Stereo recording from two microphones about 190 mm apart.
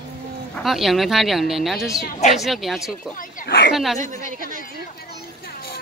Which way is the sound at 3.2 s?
45° left (ahead or behind).